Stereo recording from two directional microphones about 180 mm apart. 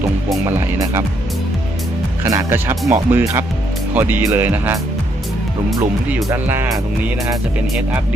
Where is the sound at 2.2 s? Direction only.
15° right (ahead or behind).